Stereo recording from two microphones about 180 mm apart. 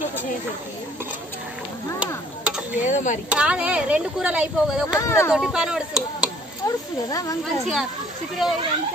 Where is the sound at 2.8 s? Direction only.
45° left (ahead or behind).